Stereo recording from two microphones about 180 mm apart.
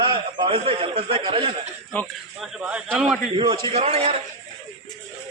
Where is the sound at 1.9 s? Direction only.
Centre (ahead or behind).